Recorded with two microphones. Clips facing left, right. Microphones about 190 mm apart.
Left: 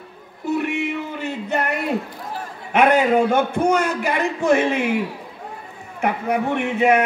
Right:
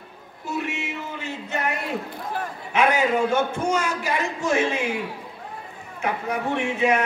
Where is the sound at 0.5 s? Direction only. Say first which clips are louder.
Left 7 dB; 60° left (ahead or behind).